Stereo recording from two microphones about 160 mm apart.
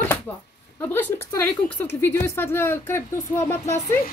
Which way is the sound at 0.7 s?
10° left (ahead or behind).